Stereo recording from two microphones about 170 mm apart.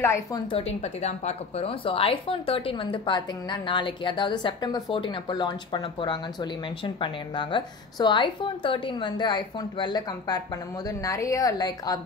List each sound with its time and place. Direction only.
0.0 s a woman's voice: 15° left (ahead or behind)
0.5 s speech: 35° left (ahead or behind)